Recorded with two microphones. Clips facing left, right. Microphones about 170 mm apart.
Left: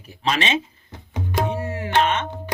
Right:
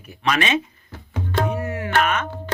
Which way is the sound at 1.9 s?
25° left (ahead or behind).